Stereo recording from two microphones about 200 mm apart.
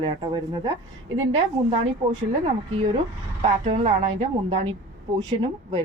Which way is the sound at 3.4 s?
30° right (ahead or behind).